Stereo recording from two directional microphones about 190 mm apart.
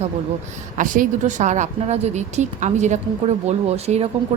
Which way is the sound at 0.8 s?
45° right (ahead or behind).